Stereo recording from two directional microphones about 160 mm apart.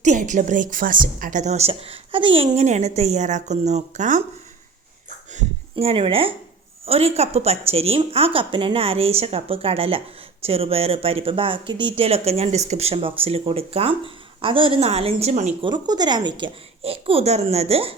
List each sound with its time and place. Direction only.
0.0 s a woman's voice: 50° right (ahead or behind)
5.7 s speech: 35° right (ahead or behind)
15.6 s speech: 25° right (ahead or behind)